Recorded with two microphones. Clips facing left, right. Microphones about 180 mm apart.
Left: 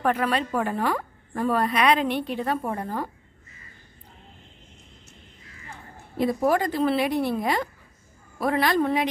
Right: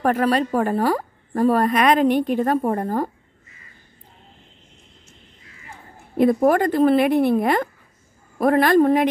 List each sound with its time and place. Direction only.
0.0 s a woman's voice: 45° right (ahead or behind)
6.1 s a woman's voice: 55° right (ahead or behind)